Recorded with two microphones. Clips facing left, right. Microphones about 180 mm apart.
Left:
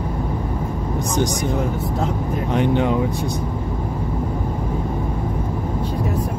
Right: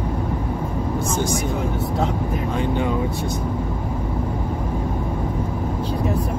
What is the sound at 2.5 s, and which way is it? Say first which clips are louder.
Speech: left 5 dB; 20° left (ahead or behind).